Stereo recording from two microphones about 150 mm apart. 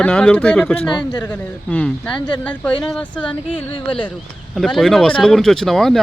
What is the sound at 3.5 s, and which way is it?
Speech, 35° left (ahead or behind).